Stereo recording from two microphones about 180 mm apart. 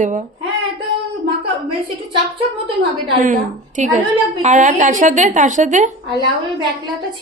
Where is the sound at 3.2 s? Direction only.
45° right (ahead or behind).